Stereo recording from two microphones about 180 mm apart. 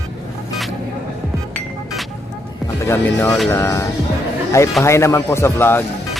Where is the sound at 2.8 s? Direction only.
15° left (ahead or behind).